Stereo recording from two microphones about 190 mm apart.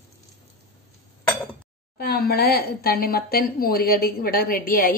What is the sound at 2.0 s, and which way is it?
Speech, 50° left (ahead or behind).